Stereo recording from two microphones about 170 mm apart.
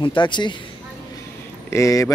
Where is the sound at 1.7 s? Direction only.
20° left (ahead or behind).